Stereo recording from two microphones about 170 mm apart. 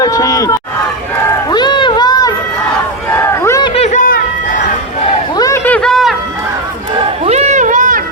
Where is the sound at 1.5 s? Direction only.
25° left (ahead or behind).